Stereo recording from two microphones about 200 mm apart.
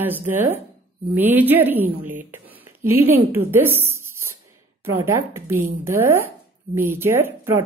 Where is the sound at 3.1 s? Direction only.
10° right (ahead or behind).